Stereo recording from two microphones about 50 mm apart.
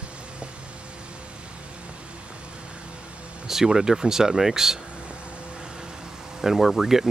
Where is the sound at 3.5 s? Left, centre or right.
Centre.